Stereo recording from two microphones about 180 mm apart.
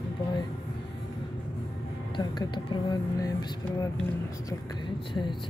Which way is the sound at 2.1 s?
25° left (ahead or behind).